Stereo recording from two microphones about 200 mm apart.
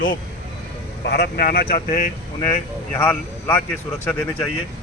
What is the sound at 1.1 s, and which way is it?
Speech, 50° left (ahead or behind).